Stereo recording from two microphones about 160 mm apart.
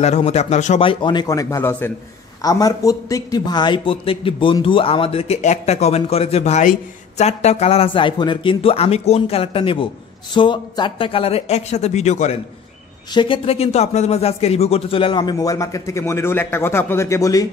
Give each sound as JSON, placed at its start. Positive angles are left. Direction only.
{"t": 0.0, "sound": "speech", "side_deg": 45}
{"t": 0.8, "sound": "a man's voice", "side_deg": 30}
{"t": 13.1, "sound": "speech", "side_deg": 30}